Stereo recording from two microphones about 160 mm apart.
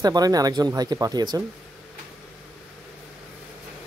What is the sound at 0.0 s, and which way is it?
Speech, 25° right (ahead or behind).